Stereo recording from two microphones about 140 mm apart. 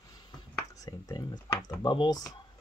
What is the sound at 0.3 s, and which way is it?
Speech, 25° left (ahead or behind).